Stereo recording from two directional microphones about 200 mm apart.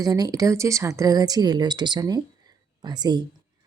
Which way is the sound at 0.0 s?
20° right (ahead or behind).